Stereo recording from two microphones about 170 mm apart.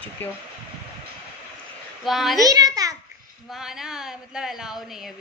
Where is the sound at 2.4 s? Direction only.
20° right (ahead or behind).